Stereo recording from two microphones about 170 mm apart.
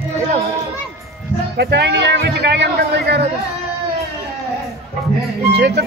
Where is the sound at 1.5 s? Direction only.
90° right.